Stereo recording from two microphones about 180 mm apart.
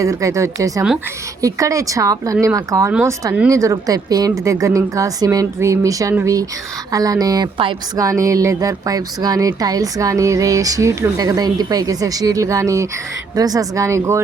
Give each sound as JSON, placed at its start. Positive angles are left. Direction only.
{"t": 0.0, "sound": "speech", "side_deg": -15}